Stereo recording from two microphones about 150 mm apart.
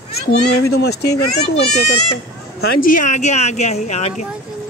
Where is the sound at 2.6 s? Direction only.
60° left (ahead or behind).